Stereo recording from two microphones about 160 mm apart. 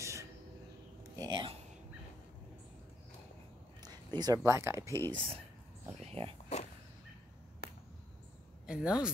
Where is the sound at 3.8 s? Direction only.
25° right (ahead or behind).